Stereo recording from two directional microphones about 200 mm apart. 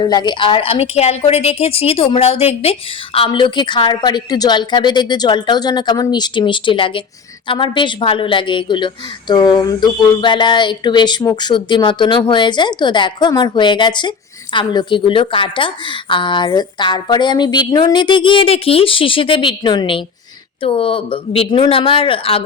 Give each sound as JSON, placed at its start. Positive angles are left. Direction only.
{"t": 0.0, "sound": "a woman's voice", "side_deg": 20}